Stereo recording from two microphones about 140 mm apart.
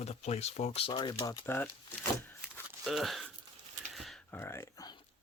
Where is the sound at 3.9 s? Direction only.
Centre (ahead or behind).